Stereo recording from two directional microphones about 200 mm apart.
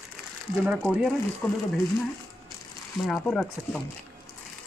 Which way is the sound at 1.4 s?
15° left (ahead or behind).